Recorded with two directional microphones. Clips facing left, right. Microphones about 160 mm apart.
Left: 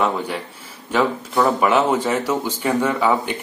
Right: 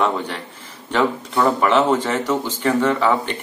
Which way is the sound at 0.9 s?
5° left (ahead or behind).